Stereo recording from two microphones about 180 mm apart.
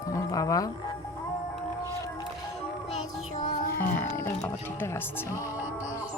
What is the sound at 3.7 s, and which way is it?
Speech, 10° left (ahead or behind).